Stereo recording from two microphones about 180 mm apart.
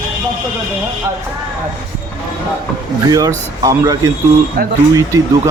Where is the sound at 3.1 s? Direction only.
20° right (ahead or behind).